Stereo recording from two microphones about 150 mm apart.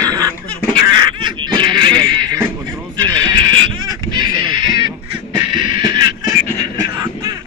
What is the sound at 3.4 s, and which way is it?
Fowl, 25° right (ahead or behind).